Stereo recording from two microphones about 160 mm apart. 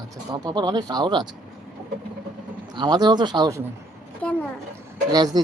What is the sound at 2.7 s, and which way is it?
Speech, 25° right (ahead or behind).